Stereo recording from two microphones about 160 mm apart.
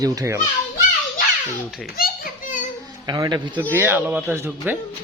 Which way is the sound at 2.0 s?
60° left (ahead or behind).